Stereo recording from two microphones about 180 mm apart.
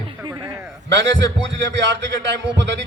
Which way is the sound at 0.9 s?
80° right.